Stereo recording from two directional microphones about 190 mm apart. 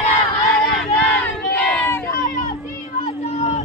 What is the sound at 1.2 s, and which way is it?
Crowd, 5° left (ahead or behind).